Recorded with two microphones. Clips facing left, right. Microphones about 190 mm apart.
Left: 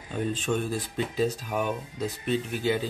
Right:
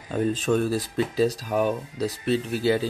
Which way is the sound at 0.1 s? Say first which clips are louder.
Right 5 dB; 40° right (ahead or behind).